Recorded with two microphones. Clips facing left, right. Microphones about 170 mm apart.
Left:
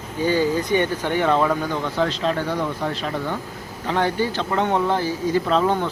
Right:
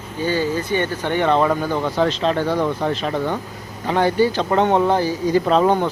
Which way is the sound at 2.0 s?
20° right (ahead or behind).